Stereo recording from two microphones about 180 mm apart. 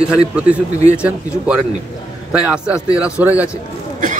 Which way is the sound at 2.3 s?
5° right (ahead or behind).